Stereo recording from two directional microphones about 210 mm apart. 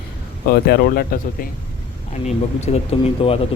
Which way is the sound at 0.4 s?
50° left (ahead or behind).